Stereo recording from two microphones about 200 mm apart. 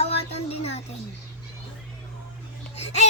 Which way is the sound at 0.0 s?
30° left (ahead or behind).